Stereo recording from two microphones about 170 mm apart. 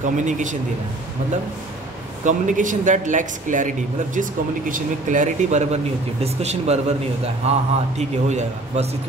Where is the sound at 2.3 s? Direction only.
50° right (ahead or behind).